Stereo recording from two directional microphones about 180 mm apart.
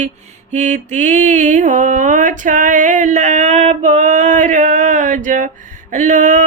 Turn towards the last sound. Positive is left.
turn(degrees=-45)  # may be behind; listen again after turning